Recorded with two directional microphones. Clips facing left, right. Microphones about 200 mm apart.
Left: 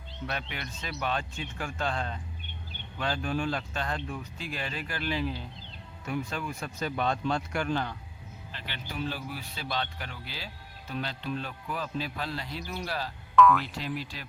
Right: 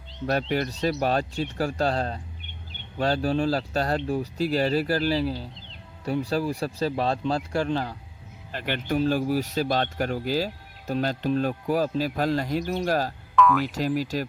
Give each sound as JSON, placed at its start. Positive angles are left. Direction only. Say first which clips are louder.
{"t": 0.3, "sound": "speech", "louder": "right 13 dB", "side_deg": -40}
{"t": 8.5, "sound": "speech", "louder": "right 15 dB", "side_deg": -55}
{"t": 9.0, "sound": "speech", "louder": "right 11 dB", "side_deg": -45}
{"t": 13.3, "sound": "speech", "louder": "even", "side_deg": 0}
{"t": 13.7, "sound": "speech", "louder": "right 10 dB", "side_deg": -45}